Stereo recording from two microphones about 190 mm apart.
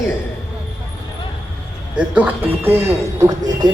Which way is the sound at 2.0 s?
10° right (ahead or behind).